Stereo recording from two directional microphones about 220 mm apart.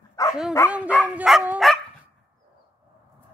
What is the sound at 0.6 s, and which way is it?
Dog, 10° left (ahead or behind).